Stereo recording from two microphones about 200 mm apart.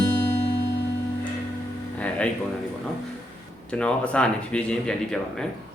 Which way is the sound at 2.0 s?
5° left (ahead or behind).